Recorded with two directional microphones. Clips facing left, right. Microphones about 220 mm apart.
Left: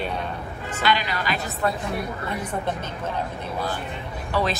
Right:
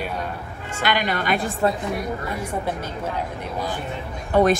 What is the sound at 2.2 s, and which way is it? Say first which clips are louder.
Speech: right 1 dB; 10° right (ahead or behind).